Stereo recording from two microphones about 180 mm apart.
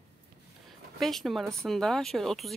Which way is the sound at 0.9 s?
Centre (ahead or behind).